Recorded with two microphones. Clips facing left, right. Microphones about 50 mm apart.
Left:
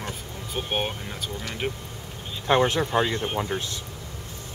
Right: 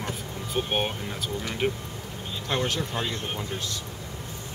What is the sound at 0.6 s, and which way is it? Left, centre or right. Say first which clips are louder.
Speech: right 1 dB; centre.